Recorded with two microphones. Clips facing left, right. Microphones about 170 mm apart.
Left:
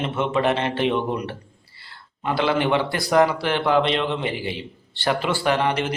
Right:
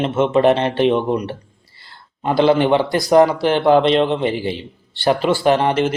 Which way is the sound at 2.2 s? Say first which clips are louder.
Right 7 dB; 35° right (ahead or behind).